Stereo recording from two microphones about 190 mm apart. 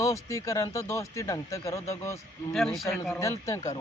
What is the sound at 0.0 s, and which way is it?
Speech, 15° left (ahead or behind).